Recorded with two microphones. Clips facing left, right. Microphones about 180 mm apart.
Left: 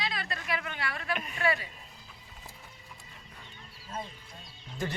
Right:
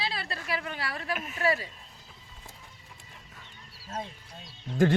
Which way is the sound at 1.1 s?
Centre (ahead or behind).